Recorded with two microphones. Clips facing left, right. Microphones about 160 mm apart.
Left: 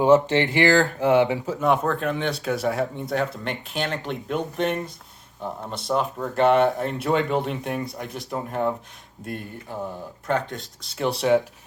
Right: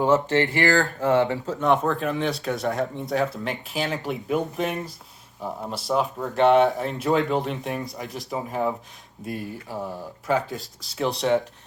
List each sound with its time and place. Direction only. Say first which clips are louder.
0.0 s speech: left 3 dB; 20° left (ahead or behind)
1.5 s speech: even; 5° left (ahead or behind)